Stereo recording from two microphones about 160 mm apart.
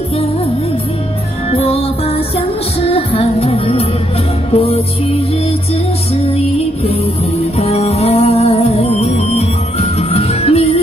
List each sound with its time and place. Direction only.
1.5 s music: 40° left (ahead or behind)
6.9 s music: 40° left (ahead or behind)